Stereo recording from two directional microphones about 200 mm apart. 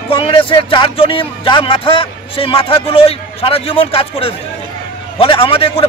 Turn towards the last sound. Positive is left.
turn(degrees=30)  # may be behind; listen again after turning